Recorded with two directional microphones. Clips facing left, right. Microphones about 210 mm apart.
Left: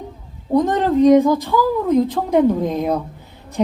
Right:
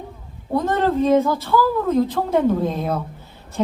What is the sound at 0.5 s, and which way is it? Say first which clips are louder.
A woman's voice: left 3 dB; 15° left (ahead or behind).